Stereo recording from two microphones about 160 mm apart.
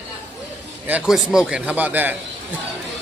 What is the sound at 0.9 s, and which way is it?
A man's voice, 5° right (ahead or behind).